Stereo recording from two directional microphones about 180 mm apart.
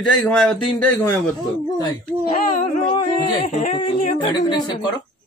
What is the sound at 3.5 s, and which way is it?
Speech, 35° left (ahead or behind).